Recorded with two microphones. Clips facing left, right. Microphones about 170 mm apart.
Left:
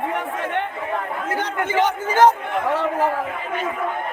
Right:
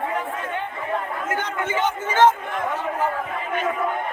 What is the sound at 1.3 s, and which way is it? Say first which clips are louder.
A man's voice: left 2 dB; 35° left (ahead or behind).